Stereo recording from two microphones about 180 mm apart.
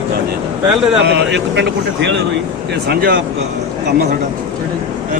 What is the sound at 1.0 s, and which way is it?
Speech, 70° right (ahead or behind).